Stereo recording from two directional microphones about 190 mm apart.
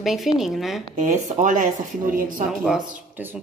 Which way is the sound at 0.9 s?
40° right (ahead or behind).